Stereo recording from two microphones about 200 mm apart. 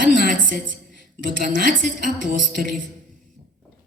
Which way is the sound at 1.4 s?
40° right (ahead or behind).